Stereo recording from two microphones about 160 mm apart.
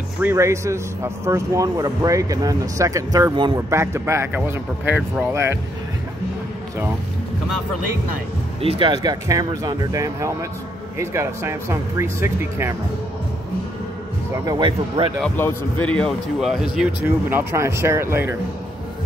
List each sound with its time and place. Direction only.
0.2 s a man's voice: 15° right (ahead or behind)
8.5 s a man's voice: 35° right (ahead or behind); by 12.7 s 15° right (ahead or behind)
14.3 s speech: 25° right (ahead or behind)
15.2 s speech: 10° left (ahead or behind); by 18.3 s 15° right (ahead or behind)